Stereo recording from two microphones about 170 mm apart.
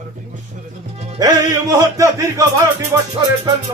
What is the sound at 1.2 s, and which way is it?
Music, 20° right (ahead or behind).